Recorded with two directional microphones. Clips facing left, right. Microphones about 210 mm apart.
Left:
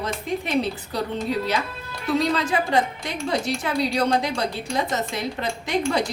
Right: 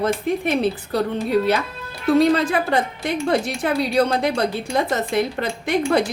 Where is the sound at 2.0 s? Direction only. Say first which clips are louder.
Right 7 dB; 55° right (ahead or behind).